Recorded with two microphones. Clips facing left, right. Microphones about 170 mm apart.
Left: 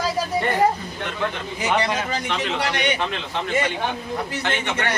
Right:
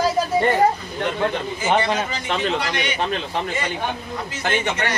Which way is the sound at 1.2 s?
30° right (ahead or behind).